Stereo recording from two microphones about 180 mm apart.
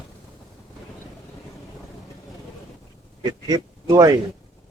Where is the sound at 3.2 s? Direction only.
20° right (ahead or behind).